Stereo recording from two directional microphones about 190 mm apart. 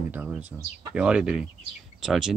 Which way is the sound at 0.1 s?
10° right (ahead or behind).